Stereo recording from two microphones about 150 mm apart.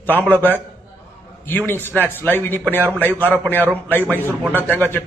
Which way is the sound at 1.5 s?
15° left (ahead or behind).